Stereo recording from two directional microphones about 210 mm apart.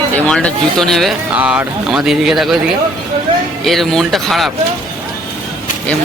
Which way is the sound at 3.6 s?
Centre (ahead or behind).